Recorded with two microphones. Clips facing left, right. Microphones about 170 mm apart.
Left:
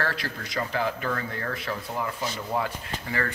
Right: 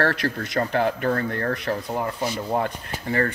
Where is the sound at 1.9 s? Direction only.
35° right (ahead or behind).